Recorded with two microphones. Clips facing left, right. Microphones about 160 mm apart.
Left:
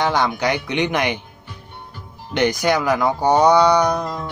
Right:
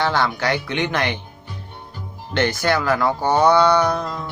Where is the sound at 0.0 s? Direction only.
15° left (ahead or behind).